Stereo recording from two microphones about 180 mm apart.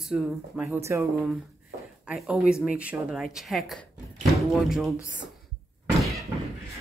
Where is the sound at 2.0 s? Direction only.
5° right (ahead or behind).